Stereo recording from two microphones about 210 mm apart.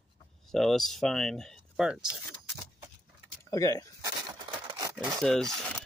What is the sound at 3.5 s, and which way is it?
Speech, 15° left (ahead or behind).